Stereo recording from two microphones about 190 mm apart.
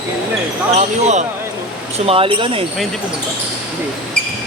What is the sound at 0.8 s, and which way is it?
Speech, 35° right (ahead or behind).